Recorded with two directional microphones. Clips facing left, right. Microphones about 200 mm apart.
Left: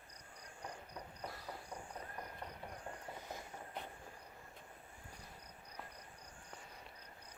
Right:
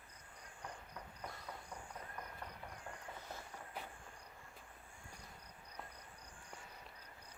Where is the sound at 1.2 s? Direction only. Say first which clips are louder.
Left 2 dB; centre (ahead or behind).